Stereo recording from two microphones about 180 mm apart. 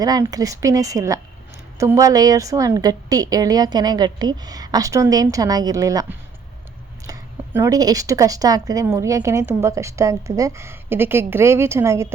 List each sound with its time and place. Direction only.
0.0 s a woman's voice: 20° right (ahead or behind)